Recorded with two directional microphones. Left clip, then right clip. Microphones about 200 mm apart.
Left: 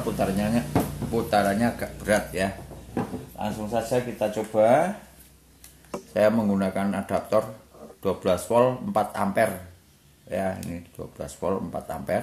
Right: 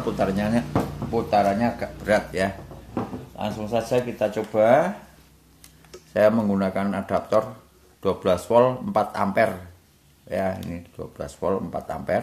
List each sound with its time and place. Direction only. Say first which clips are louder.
0.2 s speech: right 2 dB; 20° right (ahead or behind)
1.1 s speech: right 2 dB; centre (ahead or behind)
3.3 s speech: right 2 dB; 25° right (ahead or behind)
6.1 s speech: right 2 dB; 15° right (ahead or behind)